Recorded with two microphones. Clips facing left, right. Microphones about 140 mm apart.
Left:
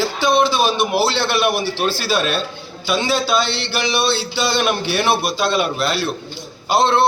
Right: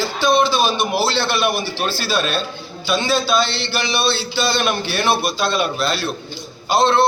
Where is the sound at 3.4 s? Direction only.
70° left (ahead or behind).